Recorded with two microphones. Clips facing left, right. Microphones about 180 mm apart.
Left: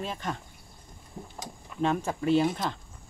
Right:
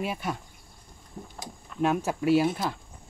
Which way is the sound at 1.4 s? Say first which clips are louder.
Right 2 dB; 10° right (ahead or behind).